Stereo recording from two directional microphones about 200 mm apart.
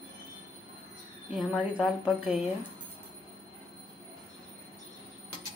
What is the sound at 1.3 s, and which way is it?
Speech, 5° right (ahead or behind).